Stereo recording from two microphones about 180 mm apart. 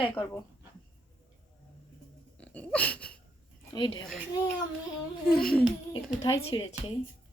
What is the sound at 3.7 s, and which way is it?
Speech, 25° left (ahead or behind).